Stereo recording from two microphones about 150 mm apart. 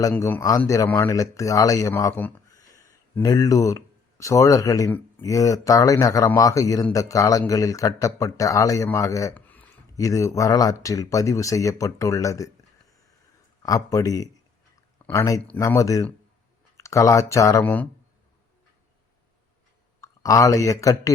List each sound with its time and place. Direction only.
0.0 s speech: 15° left (ahead or behind)
2.5 s a sound: 25° left (ahead or behind)
4.9 s speech: 20° left (ahead or behind)
9.3 s a sound: 10° left (ahead or behind)
10.0 s speech: 20° left (ahead or behind)
13.6 s speech: 25° left (ahead or behind)
20.0 s speech: 20° left (ahead or behind)